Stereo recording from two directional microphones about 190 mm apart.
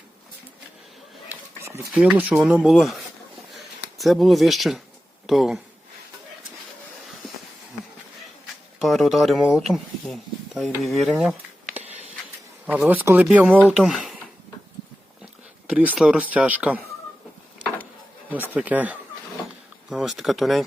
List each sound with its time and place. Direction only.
1.3 s a sound: 15° right (ahead or behind)
1.8 s speech: 5° right (ahead or behind)
8.8 s speech: centre (ahead or behind)
11.2 s computer keyboard: 5° right (ahead or behind)
12.6 s speech: 5° right (ahead or behind)
15.2 s speech: 5° right (ahead or behind)
18.5 s speech: 5° right (ahead or behind)